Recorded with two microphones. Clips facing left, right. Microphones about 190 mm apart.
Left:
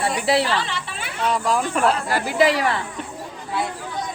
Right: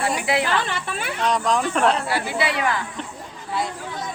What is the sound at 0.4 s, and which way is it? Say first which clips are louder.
Speech: right 1 dB; 50° right (ahead or behind).